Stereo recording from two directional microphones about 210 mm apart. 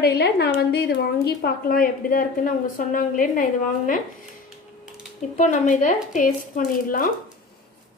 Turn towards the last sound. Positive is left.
turn(degrees=40)  # may be behind; listen again after turning